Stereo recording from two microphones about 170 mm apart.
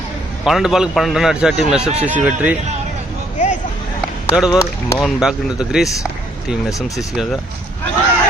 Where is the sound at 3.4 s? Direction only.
45° left (ahead or behind).